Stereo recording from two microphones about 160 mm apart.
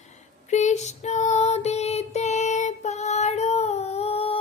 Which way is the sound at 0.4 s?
45° left (ahead or behind).